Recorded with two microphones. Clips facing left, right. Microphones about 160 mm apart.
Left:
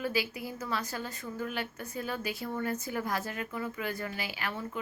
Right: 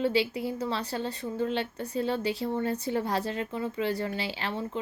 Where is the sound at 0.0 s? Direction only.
30° right (ahead or behind).